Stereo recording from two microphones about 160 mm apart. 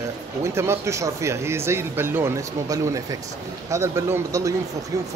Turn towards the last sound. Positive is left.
turn(degrees=-20)  # may be behind; listen again after turning